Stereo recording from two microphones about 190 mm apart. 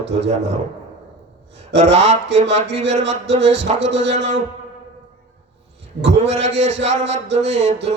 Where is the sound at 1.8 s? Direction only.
35° right (ahead or behind).